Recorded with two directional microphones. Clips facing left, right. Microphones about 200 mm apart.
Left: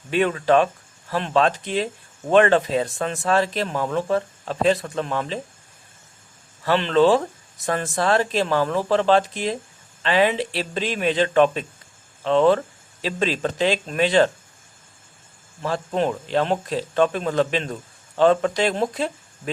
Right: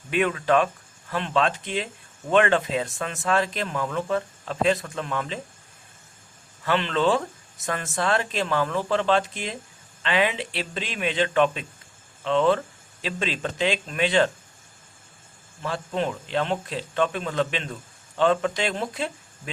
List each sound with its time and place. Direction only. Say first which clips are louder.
0.1 s speech: left 3 dB; 35° left (ahead or behind)
6.7 s speech: left 6 dB; 35° left (ahead or behind)
15.6 s speech: left 4 dB; 40° left (ahead or behind)